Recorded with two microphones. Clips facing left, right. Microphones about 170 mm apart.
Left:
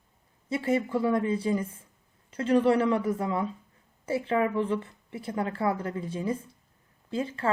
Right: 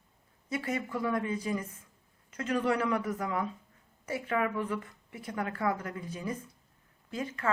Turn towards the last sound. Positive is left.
turn(degrees=30)  # may be behind; listen again after turning